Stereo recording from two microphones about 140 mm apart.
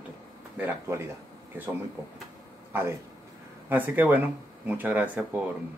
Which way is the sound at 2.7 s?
20° right (ahead or behind).